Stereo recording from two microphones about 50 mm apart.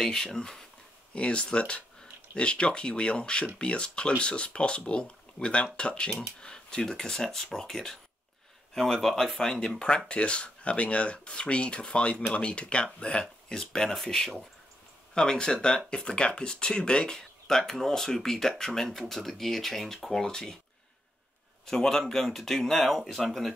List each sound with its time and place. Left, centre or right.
0.0 s speech: centre
1.1 s speech: left
21.6 s speech: centre